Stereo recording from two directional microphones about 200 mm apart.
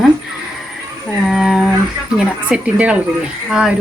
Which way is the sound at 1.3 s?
Centre (ahead or behind).